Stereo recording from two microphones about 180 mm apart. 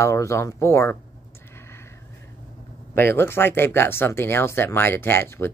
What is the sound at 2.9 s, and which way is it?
Speech, 10° left (ahead or behind).